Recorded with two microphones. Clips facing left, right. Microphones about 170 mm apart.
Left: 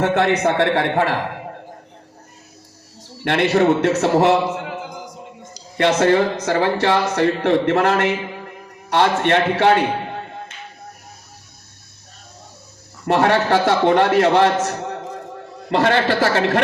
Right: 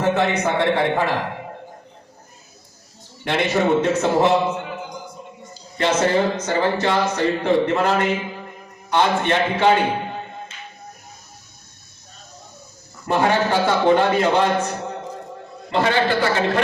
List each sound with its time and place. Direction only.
0.0 s a man's voice: 65° left (ahead or behind)
3.2 s a man's voice: 65° left (ahead or behind)
5.5 s a sound: 65° left (ahead or behind)
6.4 s a man's voice: 65° left (ahead or behind)
13.1 s a man's voice: 75° left (ahead or behind)